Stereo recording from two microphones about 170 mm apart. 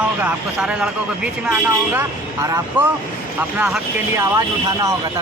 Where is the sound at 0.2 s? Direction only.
10° right (ahead or behind).